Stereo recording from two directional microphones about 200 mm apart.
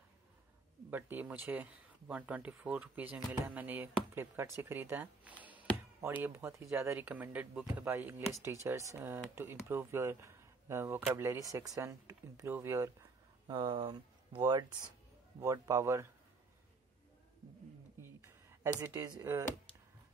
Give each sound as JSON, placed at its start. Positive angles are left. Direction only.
{"t": 0.8, "sound": "speech", "side_deg": -10}
{"t": 13.5, "sound": "speech", "side_deg": -25}
{"t": 18.0, "sound": "a sound", "side_deg": -15}